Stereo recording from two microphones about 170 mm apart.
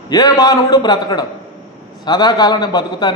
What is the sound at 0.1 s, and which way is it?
A man's voice, 25° left (ahead or behind).